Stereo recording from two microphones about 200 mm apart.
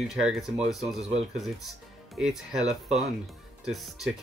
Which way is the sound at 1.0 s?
30° right (ahead or behind).